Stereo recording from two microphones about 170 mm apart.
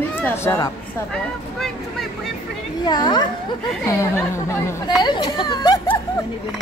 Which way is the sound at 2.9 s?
25° left (ahead or behind).